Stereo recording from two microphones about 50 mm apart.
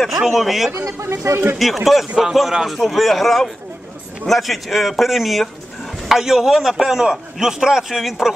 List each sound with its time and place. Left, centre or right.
0.2 s a man's voice: centre
0.8 s speech: right
1.6 s a man's voice: centre